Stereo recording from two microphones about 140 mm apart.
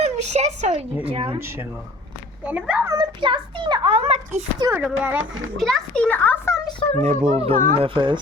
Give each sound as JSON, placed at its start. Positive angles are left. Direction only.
{"t": 0.0, "sound": "a woman's voice", "side_deg": -55}
{"t": 1.0, "sound": "a child's voice", "side_deg": -40}
{"t": 2.4, "sound": "speech", "side_deg": -10}
{"t": 2.9, "sound": "a child's voice", "side_deg": -35}
{"t": 4.8, "sound": "a child's voice", "side_deg": -5}
{"t": 7.0, "sound": "a child's voice", "side_deg": -50}